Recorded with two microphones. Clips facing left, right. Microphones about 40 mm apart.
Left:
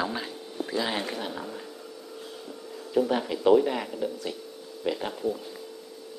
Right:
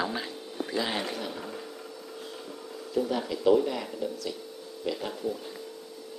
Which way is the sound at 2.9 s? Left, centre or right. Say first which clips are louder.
Left 4 dB; left.